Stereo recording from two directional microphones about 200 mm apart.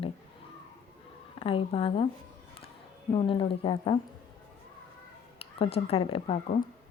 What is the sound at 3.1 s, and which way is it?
Speech, 25° left (ahead or behind).